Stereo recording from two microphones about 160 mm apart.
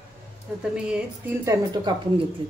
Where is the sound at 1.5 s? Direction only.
25° right (ahead or behind).